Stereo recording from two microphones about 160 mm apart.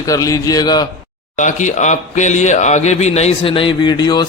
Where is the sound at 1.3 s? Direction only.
50° left (ahead or behind).